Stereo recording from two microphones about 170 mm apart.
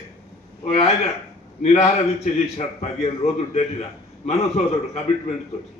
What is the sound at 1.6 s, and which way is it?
A man's voice, 40° left (ahead or behind).